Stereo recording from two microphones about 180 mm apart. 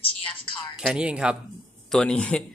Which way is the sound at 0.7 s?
5° right (ahead or behind).